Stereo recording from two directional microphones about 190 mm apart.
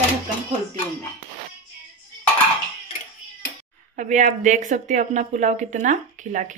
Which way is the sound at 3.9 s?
40° right (ahead or behind).